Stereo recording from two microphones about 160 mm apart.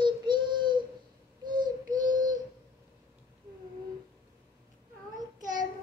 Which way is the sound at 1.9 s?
55° right (ahead or behind).